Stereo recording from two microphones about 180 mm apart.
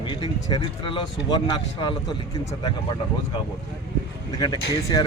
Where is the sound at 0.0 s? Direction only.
25° left (ahead or behind).